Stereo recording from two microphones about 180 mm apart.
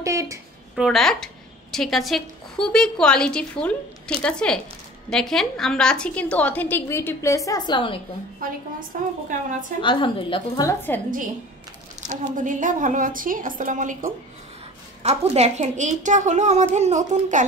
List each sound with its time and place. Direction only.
0.0 s a sound: 15° right (ahead or behind)
0.7 s a woman's voice: centre (ahead or behind); by 8.0 s 25° left (ahead or behind)
8.9 s a woman's voice: 50° right (ahead or behind)
9.8 s a woman's voice: 25° left (ahead or behind)
12.0 s a woman's voice: 45° right (ahead or behind)